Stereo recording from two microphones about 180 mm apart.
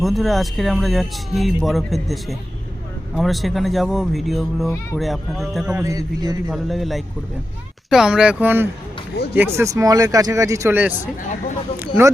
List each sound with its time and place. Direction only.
0.0 s speech: centre (ahead or behind)
5.8 s a man's voice: 20° right (ahead or behind)
6.5 s speech: centre (ahead or behind)